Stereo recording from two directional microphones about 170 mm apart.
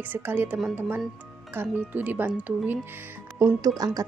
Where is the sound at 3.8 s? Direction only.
25° right (ahead or behind).